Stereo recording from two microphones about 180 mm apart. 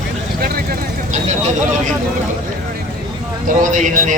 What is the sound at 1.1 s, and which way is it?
Vehicle, 40° right (ahead or behind).